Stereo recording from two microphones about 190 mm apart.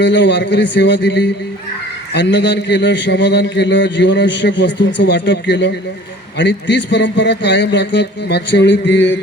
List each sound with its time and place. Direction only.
0.0 s a man's voice: 70° left (ahead or behind)